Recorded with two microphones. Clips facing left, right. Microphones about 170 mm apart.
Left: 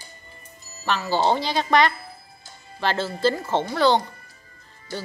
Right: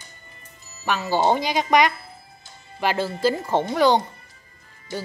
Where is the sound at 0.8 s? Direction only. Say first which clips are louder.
Right 1 dB; 15° right (ahead or behind).